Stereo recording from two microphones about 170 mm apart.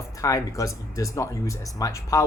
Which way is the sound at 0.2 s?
20° left (ahead or behind).